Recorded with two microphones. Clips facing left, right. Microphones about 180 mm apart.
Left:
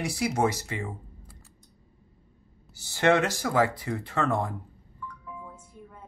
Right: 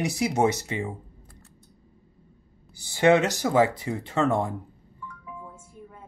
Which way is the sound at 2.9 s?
15° right (ahead or behind).